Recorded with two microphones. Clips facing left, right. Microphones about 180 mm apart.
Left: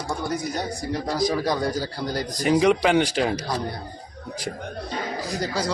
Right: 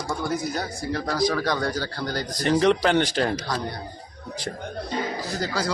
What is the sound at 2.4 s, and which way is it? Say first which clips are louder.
A man's voice: left 1 dB; 5° left (ahead or behind).